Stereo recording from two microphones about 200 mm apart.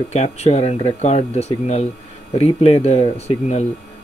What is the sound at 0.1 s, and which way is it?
Speech, 30° left (ahead or behind).